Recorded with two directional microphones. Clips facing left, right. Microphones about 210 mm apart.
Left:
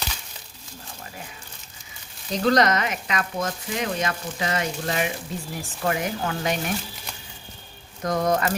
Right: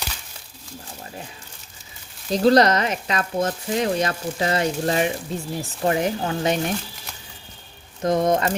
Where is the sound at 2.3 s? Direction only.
35° right (ahead or behind).